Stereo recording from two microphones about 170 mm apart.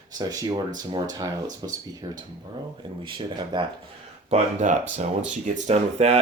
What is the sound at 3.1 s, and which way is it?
Speech, 30° right (ahead or behind).